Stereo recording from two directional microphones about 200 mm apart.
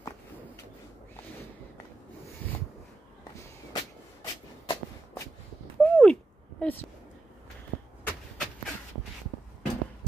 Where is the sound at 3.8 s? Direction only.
15° left (ahead or behind).